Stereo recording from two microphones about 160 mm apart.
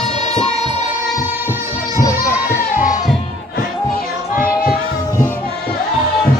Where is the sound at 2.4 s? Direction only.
60° left (ahead or behind).